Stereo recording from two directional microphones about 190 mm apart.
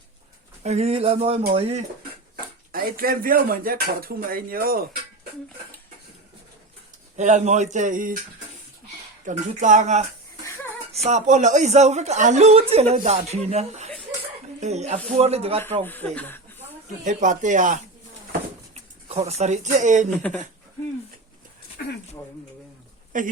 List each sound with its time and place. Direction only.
0.6 s a woman's voice: 35° right (ahead or behind)
2.3 s speech: 50° right (ahead or behind)
7.2 s a woman's voice: 40° right (ahead or behind)
9.2 s a woman's voice: 40° right (ahead or behind)
15.8 s speech: 10° left (ahead or behind)
17.0 s a woman's voice: 40° right (ahead or behind)
23.1 s a woman's voice: 45° right (ahead or behind)